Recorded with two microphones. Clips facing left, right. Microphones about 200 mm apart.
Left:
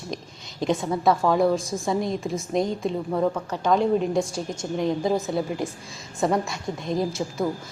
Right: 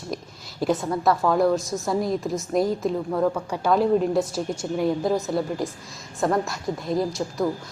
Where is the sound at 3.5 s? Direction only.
5° right (ahead or behind).